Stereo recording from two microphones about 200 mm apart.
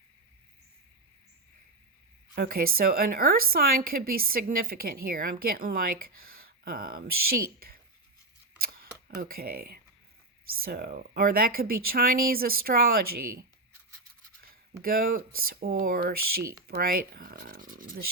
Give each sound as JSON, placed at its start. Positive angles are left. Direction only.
{"t": 2.3, "sound": "a woman's voice", "side_deg": -50}
{"t": 8.5, "sound": "camera", "side_deg": -50}
{"t": 9.0, "sound": "a woman's voice", "side_deg": -45}
{"t": 14.4, "sound": "a sound", "side_deg": -45}
{"t": 15.4, "sound": "a woman's voice", "side_deg": -50}